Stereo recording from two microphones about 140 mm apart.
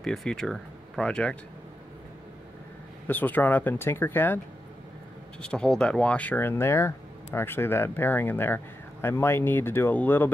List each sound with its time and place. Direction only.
0.0 s speech: 5° left (ahead or behind)
3.1 s speech: 15° left (ahead or behind)
5.4 s speech: 5° left (ahead or behind)